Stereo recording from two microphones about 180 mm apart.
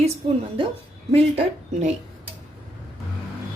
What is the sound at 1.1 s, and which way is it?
Speech, 35° right (ahead or behind).